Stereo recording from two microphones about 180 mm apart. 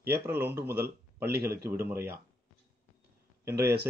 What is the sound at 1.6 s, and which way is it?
Speech, 15° right (ahead or behind).